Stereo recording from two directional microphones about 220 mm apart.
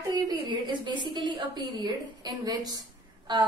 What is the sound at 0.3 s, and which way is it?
A woman's voice, 20° right (ahead or behind).